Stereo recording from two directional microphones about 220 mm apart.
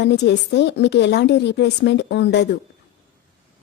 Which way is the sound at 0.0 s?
50° left (ahead or behind).